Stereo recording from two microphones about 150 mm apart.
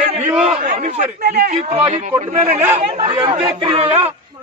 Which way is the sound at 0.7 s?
65° right (ahead or behind).